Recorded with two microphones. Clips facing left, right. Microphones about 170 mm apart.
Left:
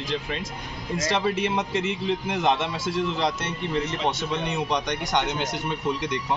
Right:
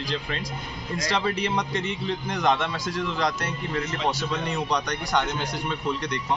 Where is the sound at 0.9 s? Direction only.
25° left (ahead or behind).